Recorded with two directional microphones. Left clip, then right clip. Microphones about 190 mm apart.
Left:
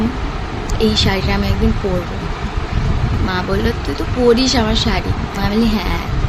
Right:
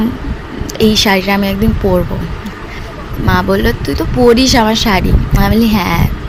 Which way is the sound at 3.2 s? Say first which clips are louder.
Right 7 dB; 50° right (ahead or behind).